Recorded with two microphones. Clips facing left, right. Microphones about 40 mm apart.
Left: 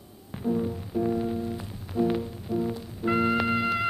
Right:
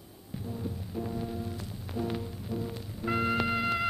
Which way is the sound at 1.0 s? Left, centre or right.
Left.